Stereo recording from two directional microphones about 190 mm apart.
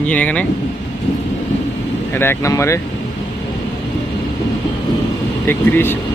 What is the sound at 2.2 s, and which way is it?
Speech, 15° left (ahead or behind).